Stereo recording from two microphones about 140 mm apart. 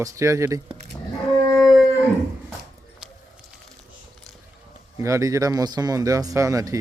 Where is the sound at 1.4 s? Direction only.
25° left (ahead or behind).